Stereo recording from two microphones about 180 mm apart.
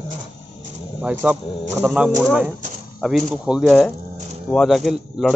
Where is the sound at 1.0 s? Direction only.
10° right (ahead or behind).